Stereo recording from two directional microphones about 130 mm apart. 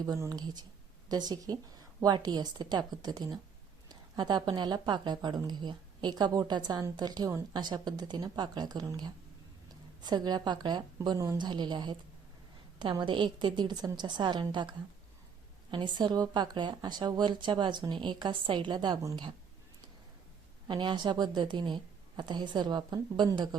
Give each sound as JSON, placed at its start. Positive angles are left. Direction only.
{"t": 0.0, "sound": "speech", "side_deg": -30}
{"t": 20.7, "sound": "speech", "side_deg": -35}